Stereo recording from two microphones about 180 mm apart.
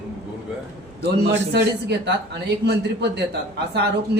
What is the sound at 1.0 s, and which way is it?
Speech, 70° right (ahead or behind).